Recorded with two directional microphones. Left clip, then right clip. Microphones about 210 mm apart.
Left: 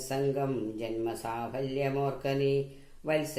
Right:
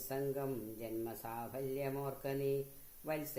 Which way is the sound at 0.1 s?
40° right (ahead or behind).